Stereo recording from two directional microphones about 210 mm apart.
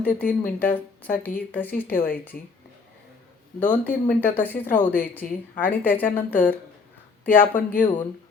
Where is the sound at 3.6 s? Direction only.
5° left (ahead or behind).